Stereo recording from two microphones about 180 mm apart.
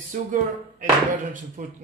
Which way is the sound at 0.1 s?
45° right (ahead or behind).